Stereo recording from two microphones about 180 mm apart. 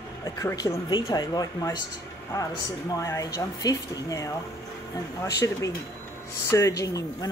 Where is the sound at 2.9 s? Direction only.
20° left (ahead or behind).